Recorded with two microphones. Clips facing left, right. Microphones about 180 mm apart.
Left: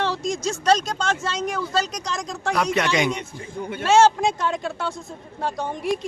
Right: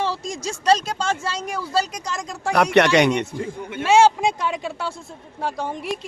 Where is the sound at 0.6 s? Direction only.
10° right (ahead or behind).